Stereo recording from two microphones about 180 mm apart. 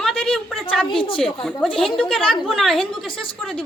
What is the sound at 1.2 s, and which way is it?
A woman's voice, centre (ahead or behind).